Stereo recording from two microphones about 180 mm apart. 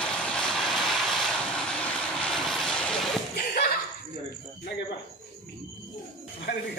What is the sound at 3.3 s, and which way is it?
Laughter, 65° left (ahead or behind).